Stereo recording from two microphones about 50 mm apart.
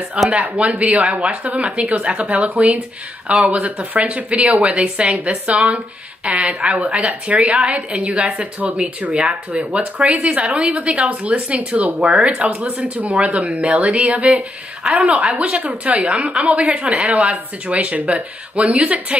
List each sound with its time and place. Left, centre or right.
0.3 s speech: right
9.1 s speech: centre
9.5 s speech: right
12.8 s speech: right